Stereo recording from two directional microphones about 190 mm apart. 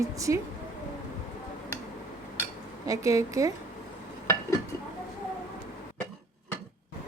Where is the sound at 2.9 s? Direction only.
15° right (ahead or behind).